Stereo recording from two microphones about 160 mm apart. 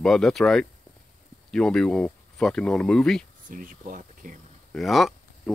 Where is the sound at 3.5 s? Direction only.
55° right (ahead or behind).